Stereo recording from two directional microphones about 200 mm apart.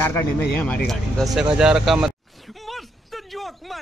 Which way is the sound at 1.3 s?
5° right (ahead or behind).